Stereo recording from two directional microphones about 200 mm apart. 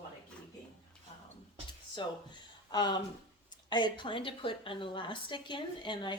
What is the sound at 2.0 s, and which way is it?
Speech, 25° left (ahead or behind).